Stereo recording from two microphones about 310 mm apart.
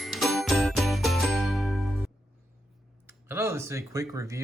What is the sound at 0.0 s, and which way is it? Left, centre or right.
Music, centre.